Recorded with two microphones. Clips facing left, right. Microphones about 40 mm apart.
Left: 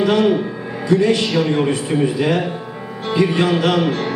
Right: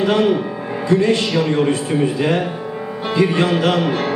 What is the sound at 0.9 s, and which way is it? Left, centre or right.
Music, right.